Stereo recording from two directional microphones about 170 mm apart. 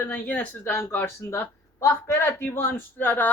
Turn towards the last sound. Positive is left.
turn(degrees=10)  # may be behind; listen again after turning